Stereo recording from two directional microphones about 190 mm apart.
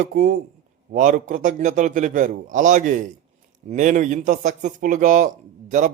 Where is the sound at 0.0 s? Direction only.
45° right (ahead or behind).